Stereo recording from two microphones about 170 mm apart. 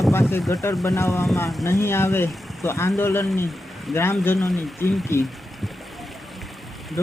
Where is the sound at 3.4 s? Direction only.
Centre (ahead or behind).